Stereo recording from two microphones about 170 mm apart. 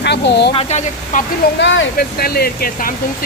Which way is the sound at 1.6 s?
90° left.